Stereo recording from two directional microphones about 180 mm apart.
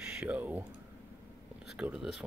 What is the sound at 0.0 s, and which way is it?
Typing, 5° right (ahead or behind).